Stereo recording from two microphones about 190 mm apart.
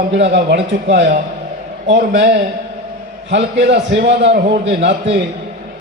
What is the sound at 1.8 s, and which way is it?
A man's voice, 70° right (ahead or behind).